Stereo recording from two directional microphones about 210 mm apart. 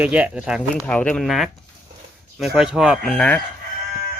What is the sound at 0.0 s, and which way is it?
Speech, 5° right (ahead or behind).